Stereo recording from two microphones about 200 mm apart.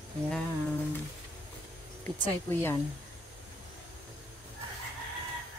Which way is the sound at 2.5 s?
10° left (ahead or behind).